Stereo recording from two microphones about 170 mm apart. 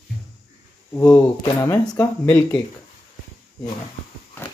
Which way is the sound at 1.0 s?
15° left (ahead or behind).